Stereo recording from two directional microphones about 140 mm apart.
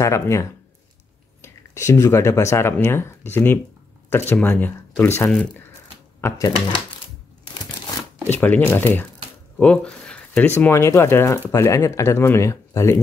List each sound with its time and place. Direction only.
0.0 s speech: 20° left (ahead or behind)
8.3 s speech: 10° left (ahead or behind)